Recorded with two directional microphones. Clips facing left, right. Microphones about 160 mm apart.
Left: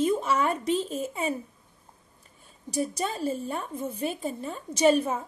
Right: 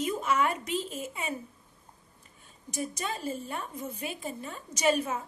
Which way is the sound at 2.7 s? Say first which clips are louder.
Left 5 dB; 35° left (ahead or behind).